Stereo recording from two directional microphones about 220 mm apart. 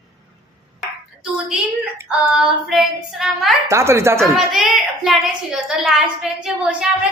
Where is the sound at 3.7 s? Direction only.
10° right (ahead or behind).